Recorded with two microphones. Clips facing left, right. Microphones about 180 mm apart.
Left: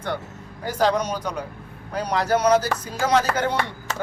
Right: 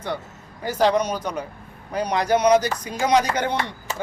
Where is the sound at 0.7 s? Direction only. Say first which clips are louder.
Right 2 dB; 10° right (ahead or behind).